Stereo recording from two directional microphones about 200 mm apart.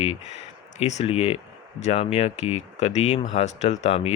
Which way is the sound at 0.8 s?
30° left (ahead or behind).